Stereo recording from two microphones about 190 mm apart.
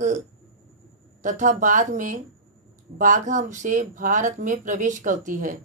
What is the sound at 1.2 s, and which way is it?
Speech, 40° right (ahead or behind).